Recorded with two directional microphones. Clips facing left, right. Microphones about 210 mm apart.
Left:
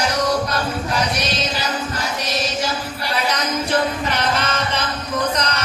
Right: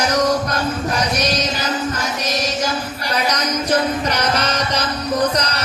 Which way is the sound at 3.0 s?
40° right (ahead or behind).